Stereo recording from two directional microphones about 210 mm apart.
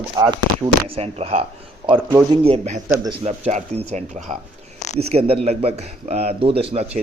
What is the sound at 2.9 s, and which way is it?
Speech, 15° right (ahead or behind).